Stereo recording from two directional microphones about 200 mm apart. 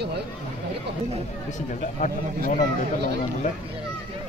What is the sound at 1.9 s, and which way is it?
Speech, 40° left (ahead or behind).